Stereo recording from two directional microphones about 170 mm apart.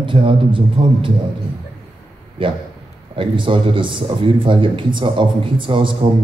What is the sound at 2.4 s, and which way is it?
A man's voice, 30° right (ahead or behind).